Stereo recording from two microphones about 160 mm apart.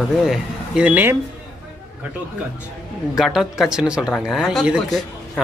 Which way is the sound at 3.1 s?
Centre (ahead or behind).